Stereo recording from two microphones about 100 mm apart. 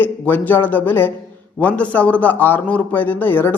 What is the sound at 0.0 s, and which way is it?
A man's voice, 20° left (ahead or behind).